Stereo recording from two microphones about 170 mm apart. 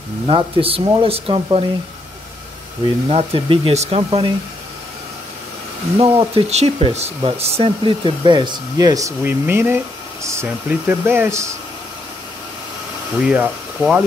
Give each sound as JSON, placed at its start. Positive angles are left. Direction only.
{"t": 0.3, "sound": "speech", "side_deg": -30}
{"t": 3.1, "sound": "speech", "side_deg": -35}
{"t": 5.9, "sound": "speech", "side_deg": -30}
{"t": 13.2, "sound": "speech", "side_deg": -5}